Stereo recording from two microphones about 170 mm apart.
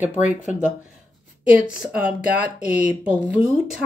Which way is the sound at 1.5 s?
5° right (ahead or behind).